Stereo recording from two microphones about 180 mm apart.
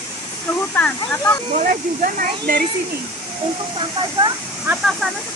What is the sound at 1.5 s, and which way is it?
Speech, 45° right (ahead or behind).